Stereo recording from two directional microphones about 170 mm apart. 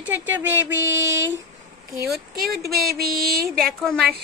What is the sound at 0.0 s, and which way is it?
A woman's voice, 10° right (ahead or behind).